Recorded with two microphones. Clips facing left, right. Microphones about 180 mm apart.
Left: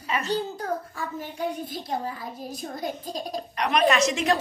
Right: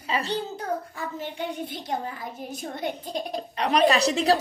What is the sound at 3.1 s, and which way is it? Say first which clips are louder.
A woman's voice: right 1 dB; 30° right (ahead or behind).